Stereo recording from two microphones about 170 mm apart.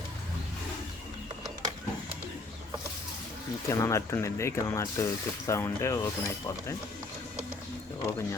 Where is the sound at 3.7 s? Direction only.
15° left (ahead or behind).